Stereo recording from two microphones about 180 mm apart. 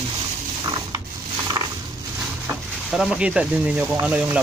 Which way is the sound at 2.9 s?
5° right (ahead or behind).